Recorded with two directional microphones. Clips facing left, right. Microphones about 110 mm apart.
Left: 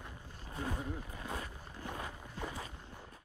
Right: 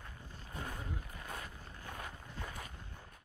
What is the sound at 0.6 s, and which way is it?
Speech, 15° left (ahead or behind).